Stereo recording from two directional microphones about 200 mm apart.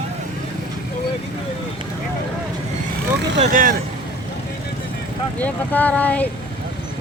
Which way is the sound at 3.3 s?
45° right (ahead or behind).